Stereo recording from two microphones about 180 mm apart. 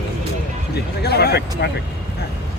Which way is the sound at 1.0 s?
65° left (ahead or behind).